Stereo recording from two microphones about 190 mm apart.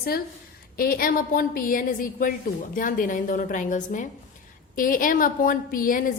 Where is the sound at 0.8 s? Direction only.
50° left (ahead or behind).